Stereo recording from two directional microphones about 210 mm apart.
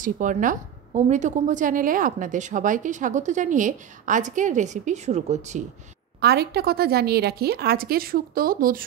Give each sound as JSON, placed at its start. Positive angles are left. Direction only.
{"t": 0.0, "sound": "a woman's voice", "side_deg": -40}
{"t": 6.2, "sound": "a woman's voice", "side_deg": -50}